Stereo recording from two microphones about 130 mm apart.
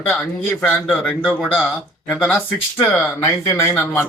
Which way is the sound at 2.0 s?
15° left (ahead or behind).